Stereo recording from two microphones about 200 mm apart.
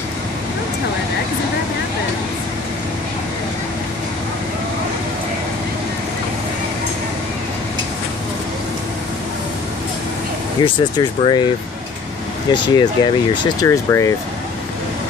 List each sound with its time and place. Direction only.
10.6 s speech: 25° left (ahead or behind)
12.4 s speech: 20° left (ahead or behind)